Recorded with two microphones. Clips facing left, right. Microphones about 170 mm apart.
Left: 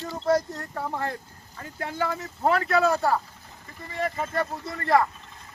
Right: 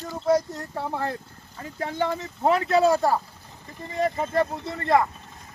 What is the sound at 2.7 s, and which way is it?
Speech, 30° right (ahead or behind).